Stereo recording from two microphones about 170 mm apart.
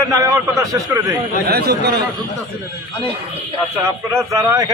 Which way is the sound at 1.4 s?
65° right (ahead or behind).